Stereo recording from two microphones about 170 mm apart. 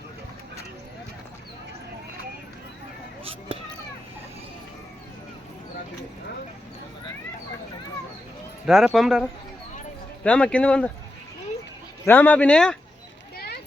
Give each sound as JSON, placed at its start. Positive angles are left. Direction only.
{"t": 8.6, "sound": "speech", "side_deg": 0}
{"t": 10.2, "sound": "speech", "side_deg": 5}
{"t": 12.0, "sound": "speech", "side_deg": 10}
{"t": 13.3, "sound": "a sound", "side_deg": 65}